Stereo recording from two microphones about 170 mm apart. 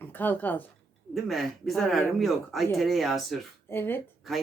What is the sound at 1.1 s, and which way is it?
Speech, centre (ahead or behind).